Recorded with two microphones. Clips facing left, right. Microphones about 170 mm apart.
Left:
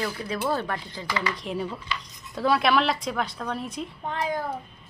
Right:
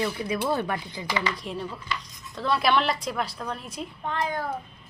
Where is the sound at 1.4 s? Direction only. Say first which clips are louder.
Left 3 dB; centre (ahead or behind).